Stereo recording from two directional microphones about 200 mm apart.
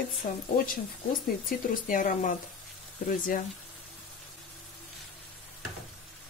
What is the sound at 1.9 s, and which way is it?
Speech, 45° left (ahead or behind).